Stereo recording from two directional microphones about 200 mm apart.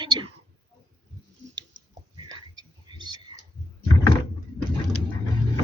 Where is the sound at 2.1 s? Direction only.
20° right (ahead or behind).